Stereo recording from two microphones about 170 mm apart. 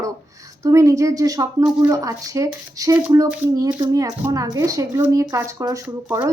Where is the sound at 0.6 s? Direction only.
20° right (ahead or behind).